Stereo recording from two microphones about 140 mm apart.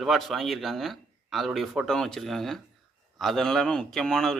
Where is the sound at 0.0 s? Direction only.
Centre (ahead or behind).